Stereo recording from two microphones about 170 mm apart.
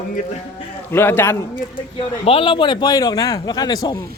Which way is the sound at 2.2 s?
30° left (ahead or behind).